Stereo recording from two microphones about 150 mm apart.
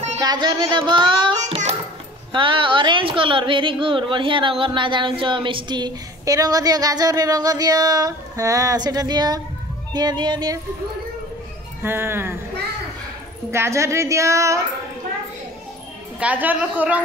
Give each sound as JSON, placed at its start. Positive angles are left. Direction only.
{"t": 0.2, "sound": "speech", "side_deg": -25}
{"t": 2.3, "sound": "a woman's voice", "side_deg": -35}
{"t": 11.8, "sound": "a woman's voice", "side_deg": -15}
{"t": 13.5, "sound": "a woman's voice", "side_deg": -20}
{"t": 16.2, "sound": "a woman's voice", "side_deg": -10}